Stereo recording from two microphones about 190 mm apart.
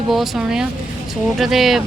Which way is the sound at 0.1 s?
Centre (ahead or behind).